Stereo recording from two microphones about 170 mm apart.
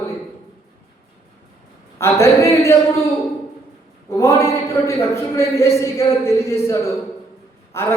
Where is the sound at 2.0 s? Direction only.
15° left (ahead or behind).